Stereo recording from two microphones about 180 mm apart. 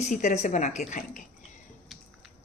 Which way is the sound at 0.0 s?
40° left (ahead or behind).